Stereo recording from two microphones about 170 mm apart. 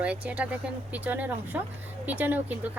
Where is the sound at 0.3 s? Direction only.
10° right (ahead or behind).